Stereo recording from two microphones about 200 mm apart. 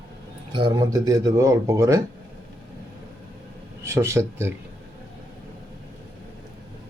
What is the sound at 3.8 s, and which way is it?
Speech, 15° right (ahead or behind).